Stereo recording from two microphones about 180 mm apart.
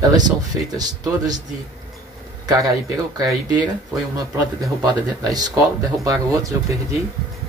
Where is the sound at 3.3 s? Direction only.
25° right (ahead or behind).